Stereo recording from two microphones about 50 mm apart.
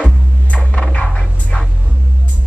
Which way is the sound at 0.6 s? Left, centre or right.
Left.